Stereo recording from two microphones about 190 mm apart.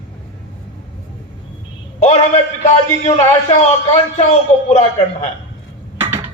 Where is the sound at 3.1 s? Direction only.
35° left (ahead or behind).